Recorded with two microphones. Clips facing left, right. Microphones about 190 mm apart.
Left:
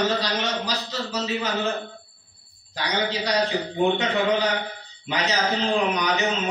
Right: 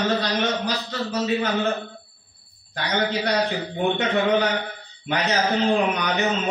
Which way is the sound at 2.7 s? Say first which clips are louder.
Right 2 dB; 55° right (ahead or behind).